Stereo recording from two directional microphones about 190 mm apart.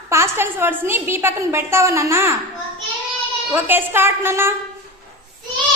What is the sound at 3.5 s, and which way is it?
A woman's voice, 10° right (ahead or behind).